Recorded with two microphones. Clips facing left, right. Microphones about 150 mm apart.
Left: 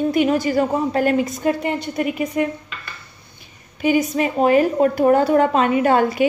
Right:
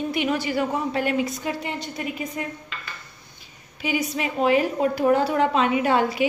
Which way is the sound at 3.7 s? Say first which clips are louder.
Left 8 dB; 50° left (ahead or behind).